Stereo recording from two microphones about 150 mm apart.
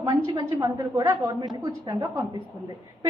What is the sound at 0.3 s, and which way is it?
A woman's voice, 25° right (ahead or behind).